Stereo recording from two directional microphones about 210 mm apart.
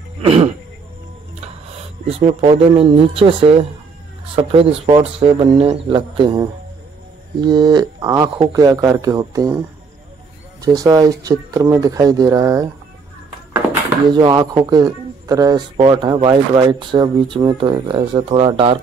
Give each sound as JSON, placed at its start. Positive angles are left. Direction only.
{"t": 0.2, "sound": "speech", "side_deg": -30}
{"t": 2.0, "sound": "speech", "side_deg": -30}
{"t": 10.6, "sound": "speech", "side_deg": -15}
{"t": 14.1, "sound": "speech", "side_deg": -20}